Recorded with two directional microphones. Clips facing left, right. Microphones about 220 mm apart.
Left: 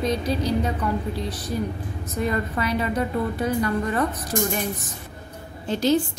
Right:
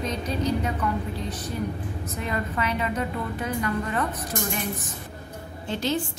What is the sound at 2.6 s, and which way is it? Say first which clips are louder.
A woman's voice: left 3 dB; 35° left (ahead or behind).